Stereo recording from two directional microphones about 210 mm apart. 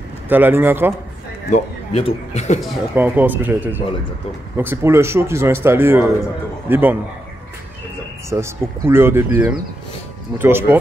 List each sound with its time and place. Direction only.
0.3 s speech: 10° right (ahead or behind)
1.5 s a man's voice: 30° left (ahead or behind)
2.9 s speech: 10° right (ahead or behind)
8.3 s speech: 10° right (ahead or behind)